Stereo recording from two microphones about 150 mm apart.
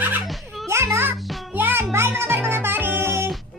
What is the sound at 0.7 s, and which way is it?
Music, 15° right (ahead or behind).